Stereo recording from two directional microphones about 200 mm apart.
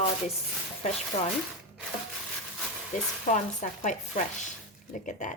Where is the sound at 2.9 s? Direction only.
40° left (ahead or behind).